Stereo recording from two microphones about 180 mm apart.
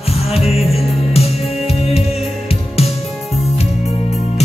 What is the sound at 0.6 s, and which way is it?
Music, centre (ahead or behind).